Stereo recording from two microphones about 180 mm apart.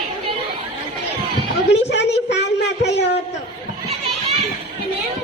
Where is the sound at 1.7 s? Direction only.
75° left (ahead or behind).